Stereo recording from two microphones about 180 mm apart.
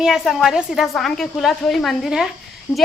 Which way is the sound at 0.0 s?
Centre (ahead or behind).